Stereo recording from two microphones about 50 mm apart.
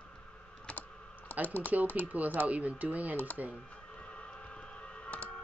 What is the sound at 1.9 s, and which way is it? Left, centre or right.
Speech, right.